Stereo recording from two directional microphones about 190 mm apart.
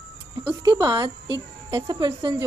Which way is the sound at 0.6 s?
20° right (ahead or behind).